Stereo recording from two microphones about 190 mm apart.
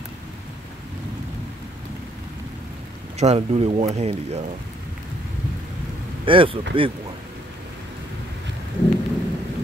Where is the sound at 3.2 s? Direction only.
35° right (ahead or behind).